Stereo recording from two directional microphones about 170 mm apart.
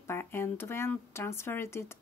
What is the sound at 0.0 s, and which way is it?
Speech, 15° left (ahead or behind).